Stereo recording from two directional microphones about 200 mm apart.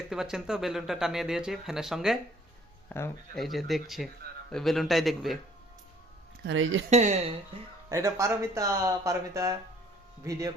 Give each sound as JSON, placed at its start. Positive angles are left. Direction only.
{"t": 0.1, "sound": "speech", "side_deg": 0}
{"t": 2.9, "sound": "speech", "side_deg": 10}
{"t": 6.4, "sound": "speech", "side_deg": -70}
{"t": 6.9, "sound": "speech", "side_deg": -35}
{"t": 7.9, "sound": "speech", "side_deg": -15}